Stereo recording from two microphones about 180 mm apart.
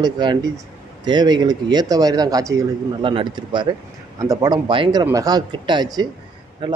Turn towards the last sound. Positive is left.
turn(degrees=-25)  # may be behind; listen again after turning